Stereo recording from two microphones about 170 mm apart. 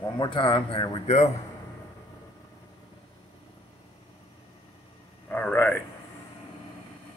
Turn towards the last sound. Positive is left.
turn(degrees=10)  # may be behind; listen again after turning